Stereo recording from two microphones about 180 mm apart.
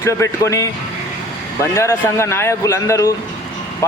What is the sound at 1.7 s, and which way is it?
A man's voice, 15° left (ahead or behind).